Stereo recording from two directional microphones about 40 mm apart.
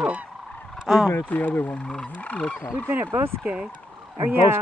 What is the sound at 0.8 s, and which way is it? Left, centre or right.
Fowl, centre.